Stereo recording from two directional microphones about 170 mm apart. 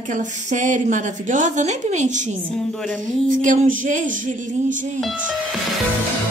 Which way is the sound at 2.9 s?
50° right (ahead or behind).